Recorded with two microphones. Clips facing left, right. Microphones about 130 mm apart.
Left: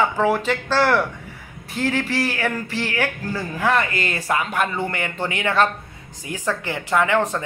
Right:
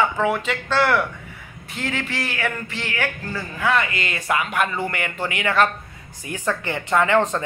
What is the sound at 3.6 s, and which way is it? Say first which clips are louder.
A man's voice: left 1 dB; 40° left (ahead or behind).